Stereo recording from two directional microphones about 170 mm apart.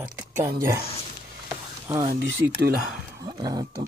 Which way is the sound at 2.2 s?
85° right.